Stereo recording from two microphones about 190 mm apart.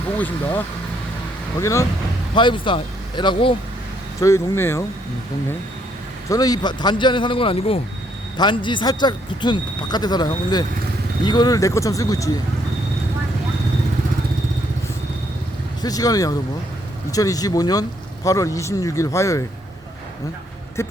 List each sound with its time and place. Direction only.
0.2 s a man's voice: 10° left (ahead or behind)
1.6 s a man's voice: 15° left (ahead or behind)
6.2 s a man's voice: 20° left (ahead or behind)
15.8 s a man's voice: 20° left (ahead or behind)
20.8 s a sound: 15° left (ahead or behind)